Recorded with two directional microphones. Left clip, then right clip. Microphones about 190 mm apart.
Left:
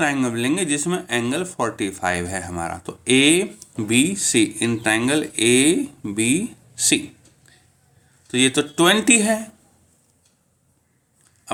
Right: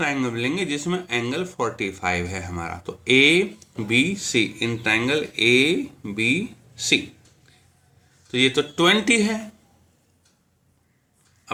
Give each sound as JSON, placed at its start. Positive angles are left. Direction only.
{"t": 0.0, "sound": "speech", "side_deg": 40}
{"t": 8.3, "sound": "speech", "side_deg": 40}